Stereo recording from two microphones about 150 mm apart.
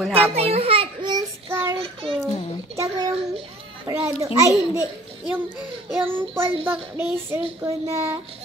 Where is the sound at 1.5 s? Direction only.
15° right (ahead or behind).